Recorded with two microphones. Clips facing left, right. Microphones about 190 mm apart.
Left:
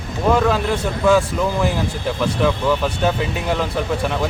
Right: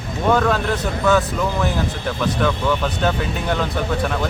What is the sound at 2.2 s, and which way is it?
Speech, 5° left (ahead or behind).